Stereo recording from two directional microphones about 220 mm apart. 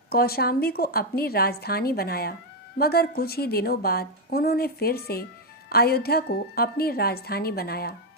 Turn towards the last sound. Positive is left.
turn(degrees=45)  # may be behind; listen again after turning